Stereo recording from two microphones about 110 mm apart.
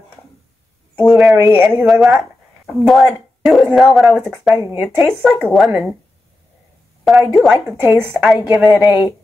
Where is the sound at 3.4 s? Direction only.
Centre (ahead or behind).